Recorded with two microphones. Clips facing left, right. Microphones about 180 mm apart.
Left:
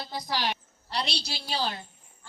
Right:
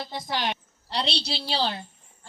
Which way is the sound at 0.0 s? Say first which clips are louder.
Right 2 dB; 25° right (ahead or behind).